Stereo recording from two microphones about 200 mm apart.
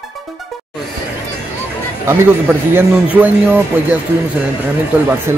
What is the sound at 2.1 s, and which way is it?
Speech, 10° right (ahead or behind).